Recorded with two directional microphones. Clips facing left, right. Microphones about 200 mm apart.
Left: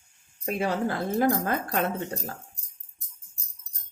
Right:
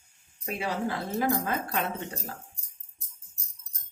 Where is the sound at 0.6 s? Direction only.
50° left (ahead or behind).